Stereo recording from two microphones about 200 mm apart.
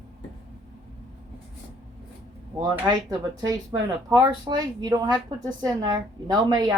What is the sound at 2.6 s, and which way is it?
A woman's voice, 20° right (ahead or behind).